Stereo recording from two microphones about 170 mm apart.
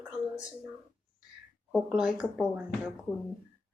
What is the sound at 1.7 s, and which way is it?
Speech, 5° right (ahead or behind).